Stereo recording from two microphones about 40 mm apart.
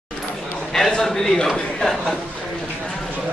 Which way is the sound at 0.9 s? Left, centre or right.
Centre.